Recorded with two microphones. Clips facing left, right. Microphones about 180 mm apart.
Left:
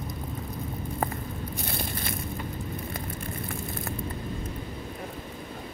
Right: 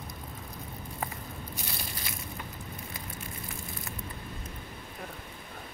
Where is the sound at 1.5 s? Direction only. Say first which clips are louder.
Left 7 dB; 50° left (ahead or behind).